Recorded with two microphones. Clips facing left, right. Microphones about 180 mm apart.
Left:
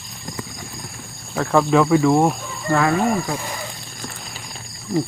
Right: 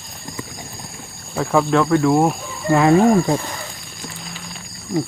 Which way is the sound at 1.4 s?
5° right (ahead or behind).